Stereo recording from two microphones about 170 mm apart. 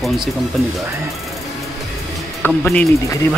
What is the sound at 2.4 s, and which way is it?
Speech, 5° left (ahead or behind).